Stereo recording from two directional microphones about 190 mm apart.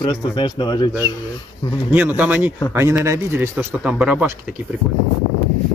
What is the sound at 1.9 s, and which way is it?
Speech, 10° right (ahead or behind).